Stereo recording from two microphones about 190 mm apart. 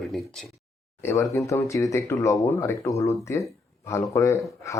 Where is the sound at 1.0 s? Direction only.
15° left (ahead or behind).